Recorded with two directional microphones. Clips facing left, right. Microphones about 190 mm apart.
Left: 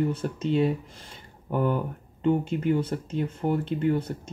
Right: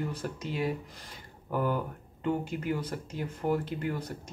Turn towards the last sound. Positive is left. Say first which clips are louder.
# left 8 dB
turn(degrees=25)  # may be behind; listen again after turning